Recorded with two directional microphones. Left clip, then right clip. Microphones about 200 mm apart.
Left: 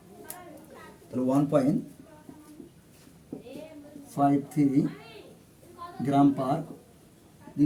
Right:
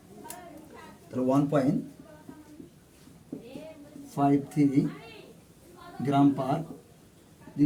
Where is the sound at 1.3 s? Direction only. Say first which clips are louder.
Left 1 dB; 15° left (ahead or behind).